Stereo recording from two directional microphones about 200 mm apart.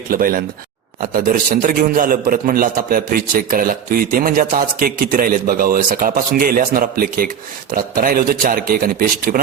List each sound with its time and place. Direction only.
0.1 s a man's voice: 45° right (ahead or behind)